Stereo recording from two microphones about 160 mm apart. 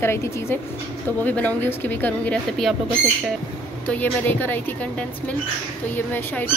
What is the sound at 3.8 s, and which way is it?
Speech, 10° left (ahead or behind).